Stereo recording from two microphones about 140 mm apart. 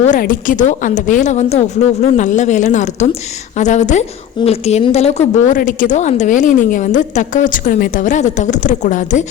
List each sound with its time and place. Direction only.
0.0 s a woman's voice: 70° left (ahead or behind); by 5.5 s 50° left (ahead or behind)
5.5 s a woman's voice: 70° left (ahead or behind)